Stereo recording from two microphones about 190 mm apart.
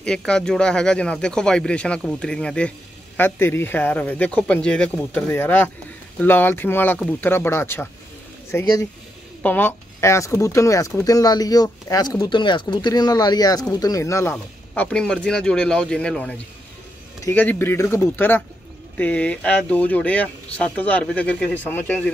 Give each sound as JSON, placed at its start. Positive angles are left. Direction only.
{"t": 0.0, "sound": "speech", "side_deg": 5}